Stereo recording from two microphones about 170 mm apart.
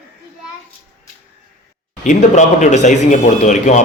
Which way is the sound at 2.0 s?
45° left (ahead or behind).